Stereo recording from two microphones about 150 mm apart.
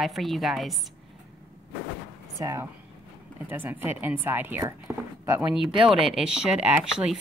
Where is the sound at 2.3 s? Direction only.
20° right (ahead or behind).